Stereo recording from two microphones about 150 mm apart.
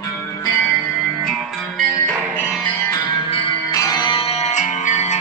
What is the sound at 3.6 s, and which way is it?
Music, 25° left (ahead or behind).